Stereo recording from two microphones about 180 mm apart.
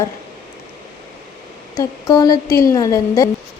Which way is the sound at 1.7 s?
20° left (ahead or behind).